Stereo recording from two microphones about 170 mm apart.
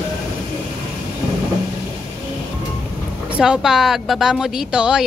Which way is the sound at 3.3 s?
5° right (ahead or behind).